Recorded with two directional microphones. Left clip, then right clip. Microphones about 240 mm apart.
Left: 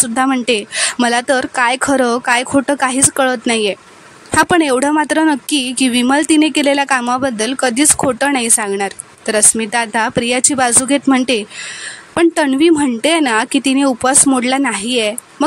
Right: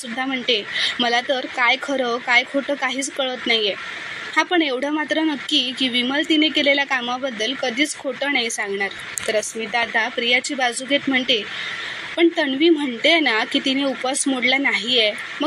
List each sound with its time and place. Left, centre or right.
0.2 s speech: left
13.5 s speech: left
13.7 s speech: left